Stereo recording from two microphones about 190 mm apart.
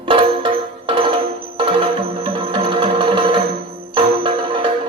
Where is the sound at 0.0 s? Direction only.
25° right (ahead or behind).